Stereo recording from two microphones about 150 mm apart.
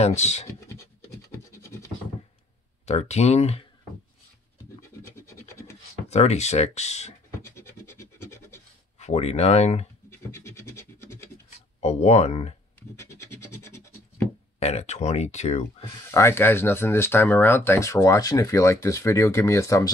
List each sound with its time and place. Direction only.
0.0 s speech: 45° left (ahead or behind)
1.3 s scratch: 15° left (ahead or behind)
2.8 s speech: 45° left (ahead or behind)
5.0 s scratch: 15° left (ahead or behind)
6.0 s speech: 45° left (ahead or behind)
7.4 s scratch: 15° left (ahead or behind)
8.9 s speech: 45° left (ahead or behind)
10.0 s scratch: 15° left (ahead or behind)
11.5 s speech: 45° left (ahead or behind)
13.1 s scratch: 20° left (ahead or behind)
14.6 s speech: 45° left (ahead or behind)
16.1 s speech: 20° left (ahead or behind)